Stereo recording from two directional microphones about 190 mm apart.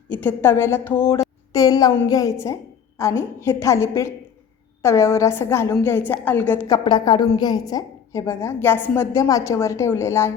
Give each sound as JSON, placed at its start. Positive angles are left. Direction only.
{"t": 0.1, "sound": "a woman's voice", "side_deg": 10}